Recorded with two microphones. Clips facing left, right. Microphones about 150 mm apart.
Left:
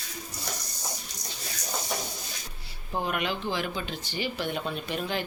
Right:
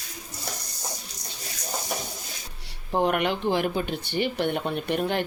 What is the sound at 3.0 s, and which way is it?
Speech, 60° right (ahead or behind).